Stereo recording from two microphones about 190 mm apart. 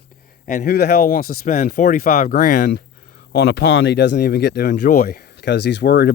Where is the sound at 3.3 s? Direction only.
60° left (ahead or behind).